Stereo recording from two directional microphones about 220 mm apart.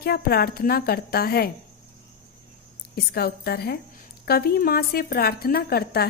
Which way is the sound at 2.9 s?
45° left (ahead or behind).